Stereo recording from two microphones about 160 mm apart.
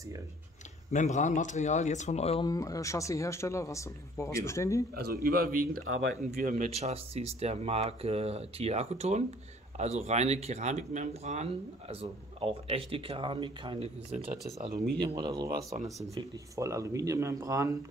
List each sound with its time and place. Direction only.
0.9 s speech: 50° left (ahead or behind)
2.4 s speech: 20° left (ahead or behind)
4.9 s a man's voice: 75° right (ahead or behind); by 11.4 s 45° right (ahead or behind)
11.9 s a man's voice: 35° right (ahead or behind)
15.1 s speech: 25° right (ahead or behind)